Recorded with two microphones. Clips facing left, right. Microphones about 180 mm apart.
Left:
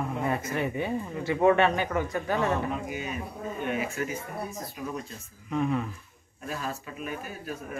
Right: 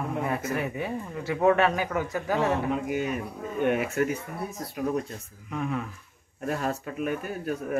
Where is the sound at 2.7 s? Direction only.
60° right (ahead or behind).